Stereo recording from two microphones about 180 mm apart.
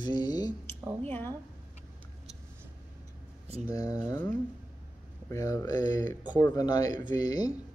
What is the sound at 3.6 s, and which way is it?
Speech, 20° left (ahead or behind).